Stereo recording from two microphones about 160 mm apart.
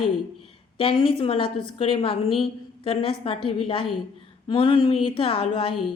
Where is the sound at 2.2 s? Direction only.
Centre (ahead or behind).